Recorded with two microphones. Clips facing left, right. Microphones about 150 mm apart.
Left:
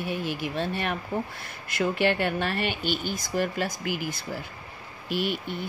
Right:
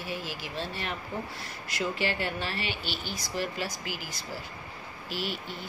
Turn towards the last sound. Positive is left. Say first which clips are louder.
# left 6 dB
turn(degrees=55)  # may be behind; listen again after turning